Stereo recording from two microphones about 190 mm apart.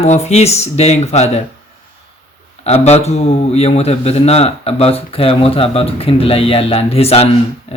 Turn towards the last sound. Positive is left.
turn(degrees=30)  # may be behind; listen again after turning